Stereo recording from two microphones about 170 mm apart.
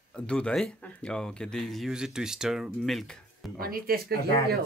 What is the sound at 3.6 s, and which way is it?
Speech, 60° right (ahead or behind).